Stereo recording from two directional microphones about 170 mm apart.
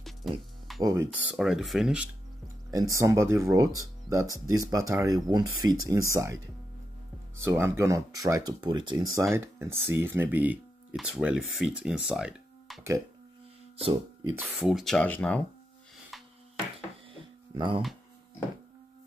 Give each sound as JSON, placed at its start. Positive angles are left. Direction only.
{"t": 0.2, "sound": "speech", "side_deg": 0}
{"t": 0.8, "sound": "speech", "side_deg": -10}
{"t": 2.4, "sound": "speech", "side_deg": -20}
{"t": 7.3, "sound": "speech", "side_deg": -15}
{"t": 13.7, "sound": "speech", "side_deg": -35}
{"t": 14.6, "sound": "speech", "side_deg": 0}
{"t": 17.6, "sound": "speech", "side_deg": -30}